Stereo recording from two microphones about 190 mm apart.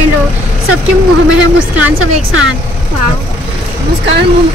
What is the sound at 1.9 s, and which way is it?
Speech, 90° right.